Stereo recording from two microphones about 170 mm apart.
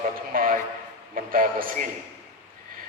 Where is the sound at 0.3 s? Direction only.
55° right (ahead or behind).